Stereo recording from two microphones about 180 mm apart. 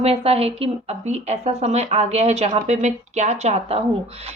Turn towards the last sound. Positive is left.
turn(degrees=-35)  # may be behind; listen again after turning